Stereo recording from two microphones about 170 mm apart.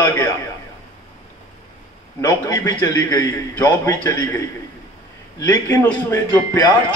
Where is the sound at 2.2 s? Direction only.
20° left (ahead or behind).